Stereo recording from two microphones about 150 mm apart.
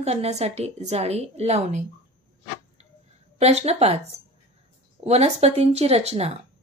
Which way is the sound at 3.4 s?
45° right (ahead or behind).